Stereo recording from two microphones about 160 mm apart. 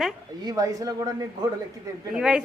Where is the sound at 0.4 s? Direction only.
25° right (ahead or behind).